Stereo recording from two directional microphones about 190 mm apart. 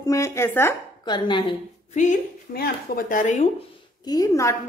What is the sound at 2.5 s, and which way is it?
Speech, 50° left (ahead or behind).